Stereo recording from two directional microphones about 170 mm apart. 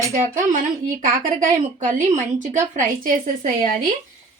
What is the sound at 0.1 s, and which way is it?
Speech, 50° right (ahead or behind).